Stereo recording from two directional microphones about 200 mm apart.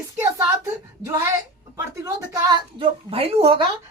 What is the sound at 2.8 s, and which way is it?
Speech, 30° right (ahead or behind).